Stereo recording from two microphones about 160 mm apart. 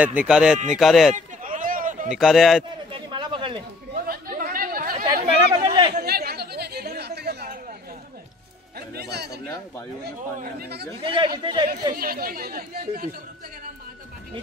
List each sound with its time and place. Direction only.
0.0 s speech: 10° right (ahead or behind)
1.1 s a sound: 55° right (ahead or behind)
2.0 s speech: centre (ahead or behind)
2.9 s a sound: 30° right (ahead or behind)
3.9 s chatter: 65° right (ahead or behind)
5.0 s chatter: 35° right (ahead or behind)
5.9 s a sound: 75° right (ahead or behind)
8.7 s music: 85° right
10.4 s speech: 85° right
11.0 s speech: 35° right (ahead or behind)
12.0 s speech: 65° right (ahead or behind)